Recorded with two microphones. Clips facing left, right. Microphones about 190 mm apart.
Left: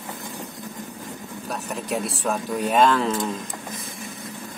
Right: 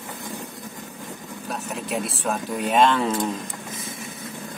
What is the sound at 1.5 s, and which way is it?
Speech, centre (ahead or behind).